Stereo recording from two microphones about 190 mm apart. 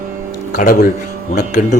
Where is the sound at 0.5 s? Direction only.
45° left (ahead or behind).